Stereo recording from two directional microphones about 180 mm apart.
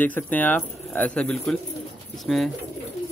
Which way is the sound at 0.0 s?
10° left (ahead or behind).